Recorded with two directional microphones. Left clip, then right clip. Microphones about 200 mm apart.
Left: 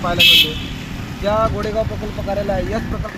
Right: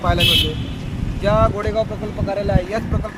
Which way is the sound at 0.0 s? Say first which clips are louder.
Left 5 dB; 25° right (ahead or behind).